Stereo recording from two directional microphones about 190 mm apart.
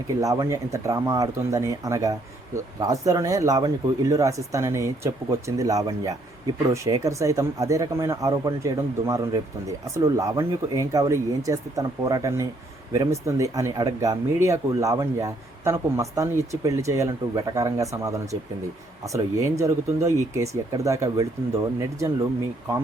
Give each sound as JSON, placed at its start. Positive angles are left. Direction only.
{"t": 0.2, "sound": "speech", "side_deg": -15}